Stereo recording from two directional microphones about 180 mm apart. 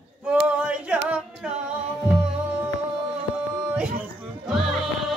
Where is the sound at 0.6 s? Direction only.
5° right (ahead or behind).